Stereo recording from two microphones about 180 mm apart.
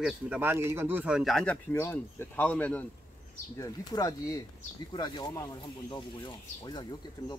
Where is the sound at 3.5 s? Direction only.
20° left (ahead or behind).